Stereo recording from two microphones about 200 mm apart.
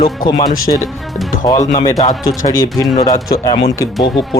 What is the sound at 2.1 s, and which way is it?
A man's voice, 20° left (ahead or behind).